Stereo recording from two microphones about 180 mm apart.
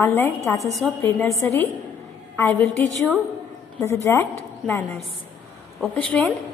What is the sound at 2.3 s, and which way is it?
Speech, 15° left (ahead or behind).